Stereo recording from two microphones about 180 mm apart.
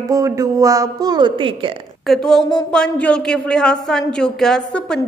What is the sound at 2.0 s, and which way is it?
Speech, centre (ahead or behind).